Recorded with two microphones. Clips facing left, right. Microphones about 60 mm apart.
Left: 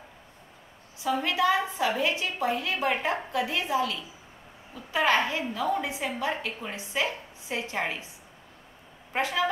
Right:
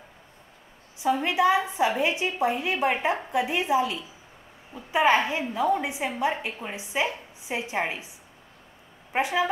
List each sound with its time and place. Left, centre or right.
1.2 s a woman's voice: right
9.1 s a woman's voice: centre